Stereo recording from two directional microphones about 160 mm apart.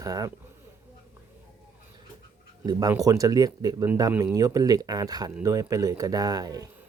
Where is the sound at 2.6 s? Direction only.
25° right (ahead or behind).